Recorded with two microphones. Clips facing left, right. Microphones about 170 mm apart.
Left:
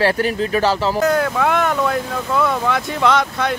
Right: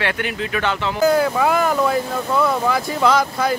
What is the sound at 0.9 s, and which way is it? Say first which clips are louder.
Speech: right 1 dB; centre (ahead or behind).